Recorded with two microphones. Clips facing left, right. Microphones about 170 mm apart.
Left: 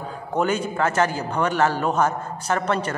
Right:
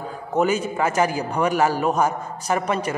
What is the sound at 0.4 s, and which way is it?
A man's voice, 5° right (ahead or behind).